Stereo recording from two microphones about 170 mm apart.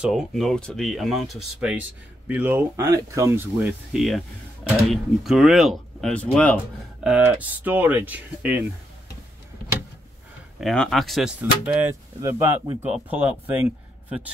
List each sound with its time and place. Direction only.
0.0 s speech: centre (ahead or behind)
7.0 s speech: 5° right (ahead or behind)
10.6 s speech: 5° left (ahead or behind)